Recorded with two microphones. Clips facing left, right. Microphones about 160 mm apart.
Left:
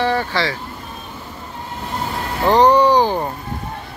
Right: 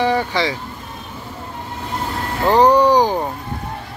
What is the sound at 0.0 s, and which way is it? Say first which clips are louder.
Speech: right 1 dB; 15° right (ahead or behind).